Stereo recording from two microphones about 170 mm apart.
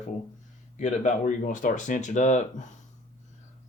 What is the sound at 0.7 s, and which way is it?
Speech, 45° left (ahead or behind).